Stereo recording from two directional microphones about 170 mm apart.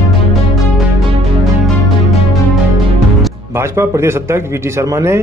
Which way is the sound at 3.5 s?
15° right (ahead or behind).